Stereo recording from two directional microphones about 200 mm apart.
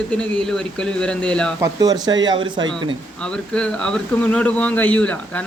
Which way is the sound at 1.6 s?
20° right (ahead or behind).